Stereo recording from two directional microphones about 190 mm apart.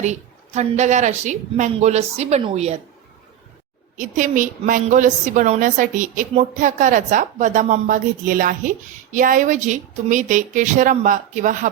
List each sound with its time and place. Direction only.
0.0 s a woman's voice: 35° right (ahead or behind)
3.9 s a woman's voice: 40° right (ahead or behind)